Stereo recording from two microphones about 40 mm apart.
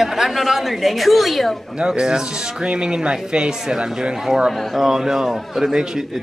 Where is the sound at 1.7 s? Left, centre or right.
Right.